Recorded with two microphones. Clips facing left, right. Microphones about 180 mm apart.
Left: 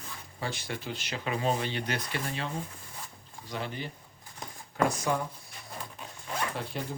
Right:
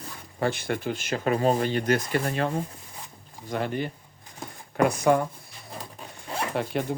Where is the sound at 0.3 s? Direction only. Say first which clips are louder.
Right 9 dB; 55° right (ahead or behind).